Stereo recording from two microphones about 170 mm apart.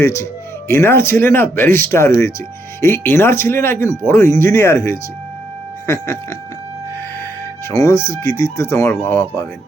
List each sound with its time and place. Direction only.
0.0 s speech: 15° left (ahead or behind)
7.7 s speech: 20° left (ahead or behind)